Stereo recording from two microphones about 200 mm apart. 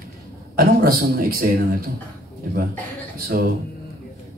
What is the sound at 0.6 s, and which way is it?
Speech, 50° right (ahead or behind).